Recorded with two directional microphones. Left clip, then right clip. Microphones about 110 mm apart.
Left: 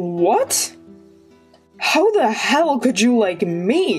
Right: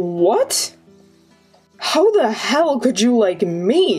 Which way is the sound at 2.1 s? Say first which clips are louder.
Even; 40° left (ahead or behind).